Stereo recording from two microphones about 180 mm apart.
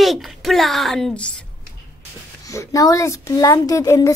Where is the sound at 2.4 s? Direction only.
15° left (ahead or behind).